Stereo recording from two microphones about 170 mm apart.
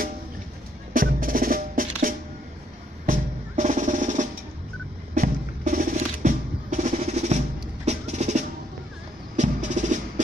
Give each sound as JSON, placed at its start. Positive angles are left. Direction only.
{"t": 0.9, "sound": "music", "side_deg": -55}